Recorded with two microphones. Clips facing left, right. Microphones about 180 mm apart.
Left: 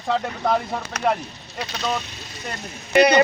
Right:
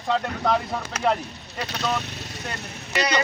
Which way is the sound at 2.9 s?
55° left (ahead or behind).